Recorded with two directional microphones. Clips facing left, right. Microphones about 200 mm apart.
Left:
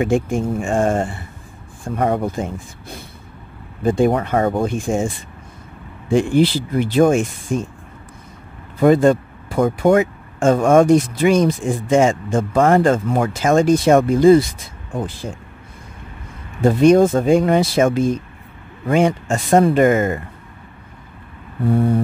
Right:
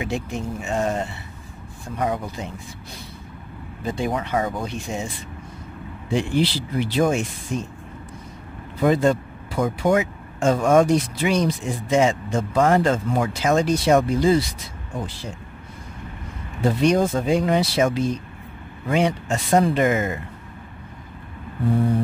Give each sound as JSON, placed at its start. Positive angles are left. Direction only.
{"t": 0.0, "sound": "speech", "side_deg": 50}
{"t": 8.8, "sound": "speech", "side_deg": 50}
{"t": 16.6, "sound": "speech", "side_deg": 50}